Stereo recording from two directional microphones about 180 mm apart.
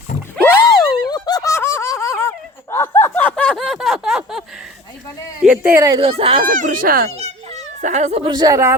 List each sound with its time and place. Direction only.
0.4 s a sound: 15° left (ahead or behind); by 4.4 s centre (ahead or behind)
5.4 s speech: 5° right (ahead or behind)
6.0 s speech: 35° right (ahead or behind)
6.4 s speech: 50° right (ahead or behind)
7.2 s a sound: 40° right (ahead or behind)
8.3 s speech: 20° right (ahead or behind)